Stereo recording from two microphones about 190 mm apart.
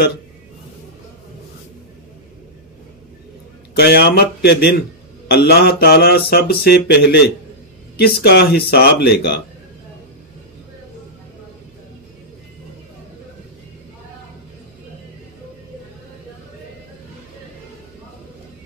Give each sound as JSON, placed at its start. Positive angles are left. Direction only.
{"t": 3.7, "sound": "mantra", "side_deg": 60}